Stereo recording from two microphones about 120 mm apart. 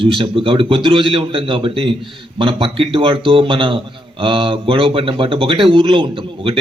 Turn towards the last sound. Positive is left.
turn(degrees=-45)  # may be behind; listen again after turning